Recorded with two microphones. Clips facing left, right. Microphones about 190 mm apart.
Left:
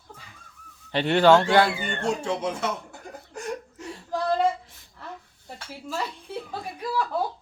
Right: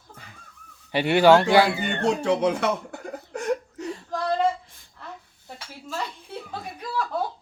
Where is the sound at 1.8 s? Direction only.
65° right (ahead or behind).